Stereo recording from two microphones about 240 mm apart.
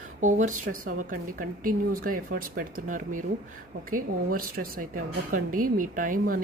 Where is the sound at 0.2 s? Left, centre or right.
Right.